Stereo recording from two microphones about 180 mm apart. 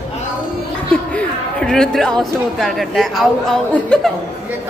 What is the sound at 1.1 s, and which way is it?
Speech, 5° left (ahead or behind).